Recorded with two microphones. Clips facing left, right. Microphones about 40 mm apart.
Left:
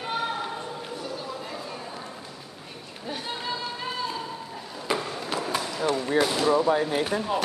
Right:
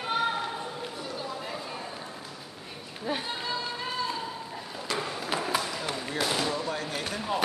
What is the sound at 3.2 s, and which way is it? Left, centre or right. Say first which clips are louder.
Run: left 1 dB; centre.